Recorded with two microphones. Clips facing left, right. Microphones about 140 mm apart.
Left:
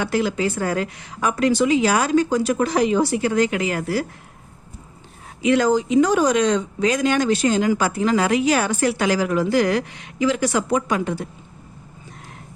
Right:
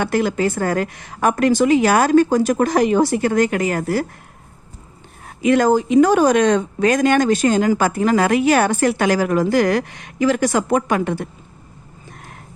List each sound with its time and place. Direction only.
0.0 s speech: 55° right (ahead or behind)
5.2 s speech: 50° right (ahead or behind)